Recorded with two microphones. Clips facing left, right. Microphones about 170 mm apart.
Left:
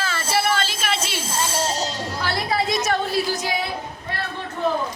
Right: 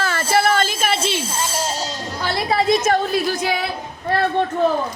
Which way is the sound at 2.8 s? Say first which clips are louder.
Right 4 dB; 55° right (ahead or behind).